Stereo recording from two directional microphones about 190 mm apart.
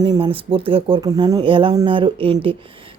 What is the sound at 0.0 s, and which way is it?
Speech, 25° right (ahead or behind).